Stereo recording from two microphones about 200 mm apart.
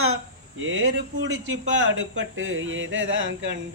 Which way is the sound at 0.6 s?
75° right (ahead or behind).